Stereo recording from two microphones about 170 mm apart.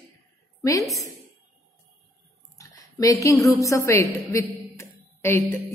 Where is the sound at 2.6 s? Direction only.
20° left (ahead or behind).